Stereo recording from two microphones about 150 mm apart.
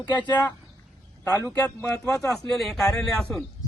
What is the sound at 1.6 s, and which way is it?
Speech, 15° left (ahead or behind).